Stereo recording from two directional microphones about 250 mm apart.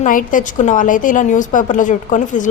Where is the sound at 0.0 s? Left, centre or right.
Left.